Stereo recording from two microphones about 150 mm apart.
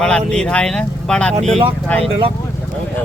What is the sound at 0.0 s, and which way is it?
Speech, 5° left (ahead or behind).